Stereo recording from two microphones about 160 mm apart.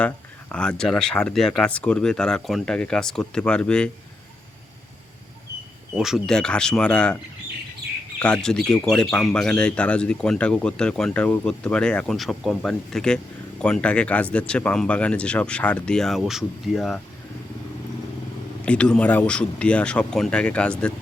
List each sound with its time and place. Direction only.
0.5 s speech: 5° left (ahead or behind)
5.9 s speech: 5° right (ahead or behind)
8.2 s speech: 5° left (ahead or behind)
18.6 s speech: 5° left (ahead or behind)